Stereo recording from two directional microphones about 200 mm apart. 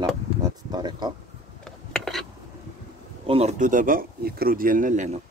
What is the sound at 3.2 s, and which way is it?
Speech, 30° right (ahead or behind).